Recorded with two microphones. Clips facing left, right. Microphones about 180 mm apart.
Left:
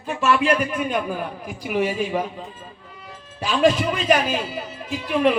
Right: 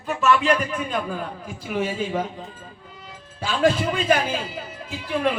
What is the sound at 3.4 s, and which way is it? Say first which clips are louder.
A man's voice: left 2 dB; 20° left (ahead or behind).